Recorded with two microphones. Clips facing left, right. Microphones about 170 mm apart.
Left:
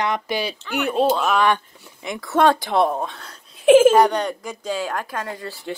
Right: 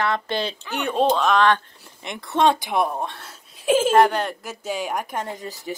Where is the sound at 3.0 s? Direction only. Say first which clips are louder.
Left 1 dB; 5° right (ahead or behind).